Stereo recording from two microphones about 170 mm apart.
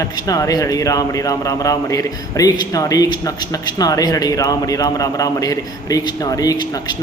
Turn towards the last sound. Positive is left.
turn(degrees=25)  # may be behind; listen again after turning